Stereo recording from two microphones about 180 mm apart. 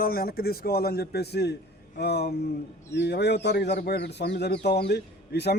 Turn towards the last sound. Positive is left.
turn(degrees=65)  # may be behind; listen again after turning